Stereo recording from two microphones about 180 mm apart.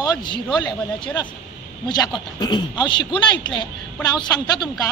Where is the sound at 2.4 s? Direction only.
25° left (ahead or behind).